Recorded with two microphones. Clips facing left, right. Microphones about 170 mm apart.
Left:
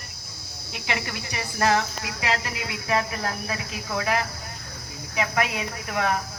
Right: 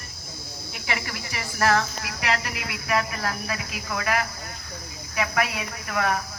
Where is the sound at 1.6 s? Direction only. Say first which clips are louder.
Even; 20° left (ahead or behind).